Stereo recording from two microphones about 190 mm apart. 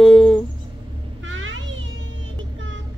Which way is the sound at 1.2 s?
90° right.